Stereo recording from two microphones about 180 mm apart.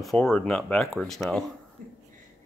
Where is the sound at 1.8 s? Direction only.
45° right (ahead or behind).